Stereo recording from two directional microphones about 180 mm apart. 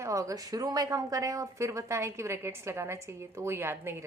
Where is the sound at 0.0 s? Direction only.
15° right (ahead or behind).